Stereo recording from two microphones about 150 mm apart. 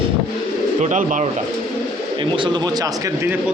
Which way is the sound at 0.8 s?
55° right (ahead or behind).